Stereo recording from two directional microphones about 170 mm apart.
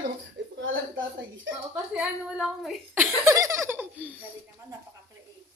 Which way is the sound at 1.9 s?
Centre (ahead or behind).